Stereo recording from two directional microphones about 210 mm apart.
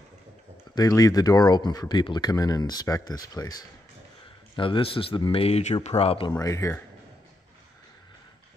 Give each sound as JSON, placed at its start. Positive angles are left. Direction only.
{"t": 0.7, "sound": "speech", "side_deg": 15}
{"t": 6.3, "sound": "speech", "side_deg": 15}